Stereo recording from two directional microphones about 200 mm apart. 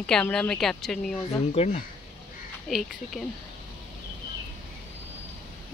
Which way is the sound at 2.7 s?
Centre (ahead or behind).